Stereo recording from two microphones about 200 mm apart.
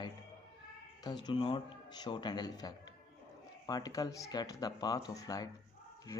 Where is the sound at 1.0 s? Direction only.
20° left (ahead or behind).